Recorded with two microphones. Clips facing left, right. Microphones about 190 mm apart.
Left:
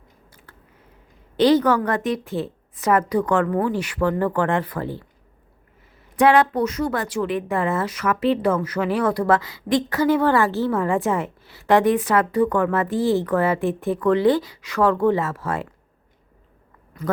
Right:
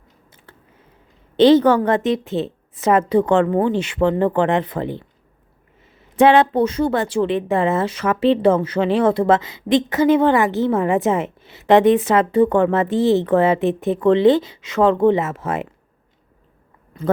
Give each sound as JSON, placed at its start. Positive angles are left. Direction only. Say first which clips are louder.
{"t": 0.5, "sound": "a sound", "louder": "right 5 dB", "side_deg": -25}
{"t": 1.4, "sound": "speech", "louder": "right 5 dB", "side_deg": -25}
{"t": 6.1, "sound": "speech", "louder": "right 3 dB", "side_deg": -25}
{"t": 16.9, "sound": "a man's voice", "louder": "right 5 dB", "side_deg": -25}